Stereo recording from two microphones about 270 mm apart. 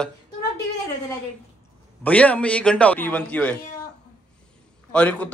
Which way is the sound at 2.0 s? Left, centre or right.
Centre.